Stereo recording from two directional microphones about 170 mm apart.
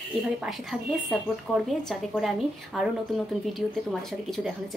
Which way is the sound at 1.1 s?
Centre (ahead or behind).